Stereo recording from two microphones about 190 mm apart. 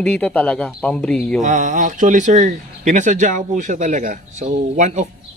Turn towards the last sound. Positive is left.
turn(degrees=-40)  # may be behind; listen again after turning